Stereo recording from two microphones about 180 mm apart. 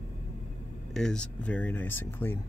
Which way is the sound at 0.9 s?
5° left (ahead or behind).